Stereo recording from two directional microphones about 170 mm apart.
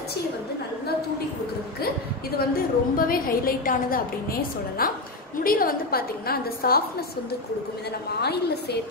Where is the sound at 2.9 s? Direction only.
60° left (ahead or behind).